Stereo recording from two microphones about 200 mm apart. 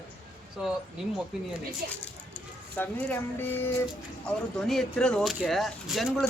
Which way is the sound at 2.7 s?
10° left (ahead or behind).